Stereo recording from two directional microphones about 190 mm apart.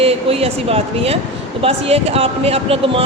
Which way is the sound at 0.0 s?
30° right (ahead or behind).